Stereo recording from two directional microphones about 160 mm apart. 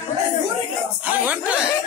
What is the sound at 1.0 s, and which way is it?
Speech, 10° right (ahead or behind).